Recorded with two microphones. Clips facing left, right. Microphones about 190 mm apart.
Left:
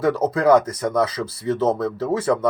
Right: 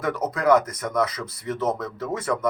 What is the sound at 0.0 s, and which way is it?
Speech, 30° left (ahead or behind).